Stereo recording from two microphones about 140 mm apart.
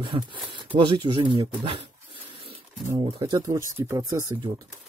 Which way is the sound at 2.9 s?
30° right (ahead or behind).